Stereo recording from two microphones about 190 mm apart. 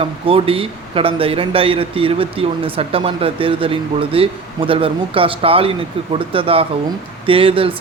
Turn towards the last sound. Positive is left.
turn(degrees=-30)  # may be behind; listen again after turning